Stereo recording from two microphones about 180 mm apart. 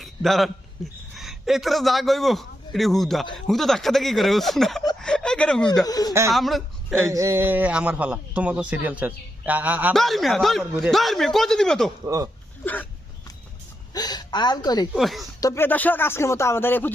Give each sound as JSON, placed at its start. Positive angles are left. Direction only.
{"t": 0.0, "sound": "a sound", "side_deg": 0}
{"t": 1.1, "sound": "a man's voice", "side_deg": 0}
{"t": 4.9, "sound": "a sound", "side_deg": 5}
{"t": 5.8, "sound": "a woman's voice", "side_deg": 20}
{"t": 6.3, "sound": "speech", "side_deg": 0}
{"t": 6.9, "sound": "a man's voice", "side_deg": -15}
{"t": 12.0, "sound": "speech", "side_deg": -20}
{"t": 12.6, "sound": "speech", "side_deg": 10}
{"t": 13.9, "sound": "a woman's voice", "side_deg": 20}
{"t": 14.9, "sound": "speech", "side_deg": 0}
{"t": 15.4, "sound": "speech", "side_deg": 15}